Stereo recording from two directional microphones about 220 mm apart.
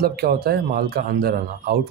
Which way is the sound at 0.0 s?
45° right (ahead or behind).